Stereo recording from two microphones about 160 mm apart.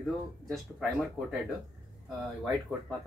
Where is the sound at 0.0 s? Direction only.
5° left (ahead or behind).